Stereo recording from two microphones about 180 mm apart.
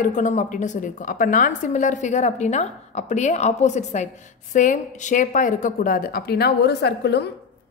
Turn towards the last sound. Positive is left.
turn(degrees=65)  # may be behind; listen again after turning